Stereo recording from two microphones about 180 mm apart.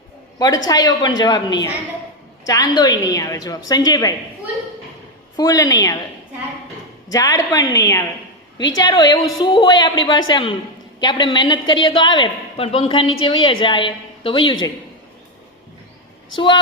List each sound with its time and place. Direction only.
0.3 s a woman's voice: 20° left (ahead or behind)
5.4 s a woman's voice: 20° left (ahead or behind)
7.1 s a woman's voice: 20° left (ahead or behind)
16.3 s a woman's voice: 25° left (ahead or behind)